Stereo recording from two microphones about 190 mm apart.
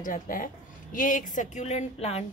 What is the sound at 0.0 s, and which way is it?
A woman's voice, 45° left (ahead or behind).